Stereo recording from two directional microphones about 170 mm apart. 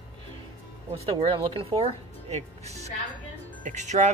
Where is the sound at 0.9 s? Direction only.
35° right (ahead or behind).